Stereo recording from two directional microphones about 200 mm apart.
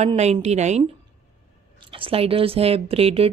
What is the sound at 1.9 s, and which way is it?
Speech, 25° right (ahead or behind).